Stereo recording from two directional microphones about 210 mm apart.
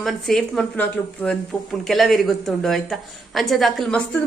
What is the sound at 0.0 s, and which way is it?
A woman's voice, 5° left (ahead or behind).